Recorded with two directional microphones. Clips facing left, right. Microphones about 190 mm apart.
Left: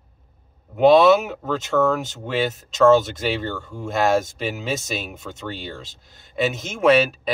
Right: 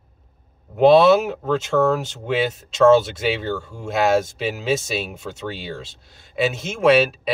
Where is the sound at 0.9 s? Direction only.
Centre (ahead or behind).